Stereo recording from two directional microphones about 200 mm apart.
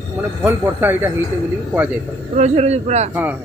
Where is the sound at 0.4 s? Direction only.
10° right (ahead or behind).